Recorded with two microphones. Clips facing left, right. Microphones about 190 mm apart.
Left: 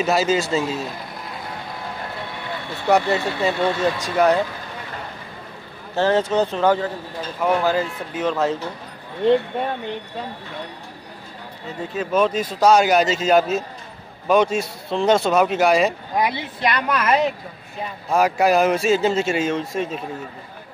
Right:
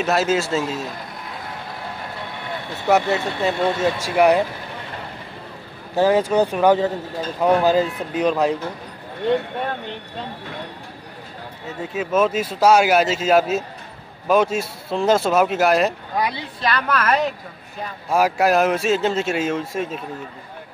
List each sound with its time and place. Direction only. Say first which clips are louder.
0.0 s speech: even; centre (ahead or behind)
2.9 s speech: even; centre (ahead or behind)
5.9 s speech: right 2 dB; 10° right (ahead or behind)
11.9 s speech: even; 5° right (ahead or behind)
16.2 s a woman's voice: left 2 dB; 20° left (ahead or behind)
18.1 s speech: even; 5° right (ahead or behind)